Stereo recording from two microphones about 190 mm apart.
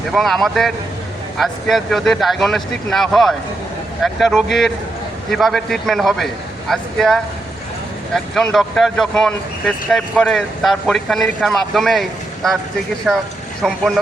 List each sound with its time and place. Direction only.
0.1 s speech: centre (ahead or behind)